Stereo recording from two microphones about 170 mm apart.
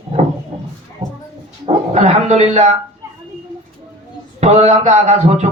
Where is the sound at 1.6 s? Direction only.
40° right (ahead or behind).